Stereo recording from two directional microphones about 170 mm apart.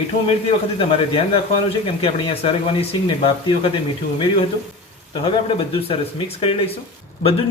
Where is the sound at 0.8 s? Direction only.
35° left (ahead or behind).